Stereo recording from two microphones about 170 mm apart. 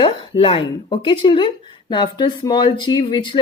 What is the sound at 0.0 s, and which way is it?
Speech, 30° left (ahead or behind).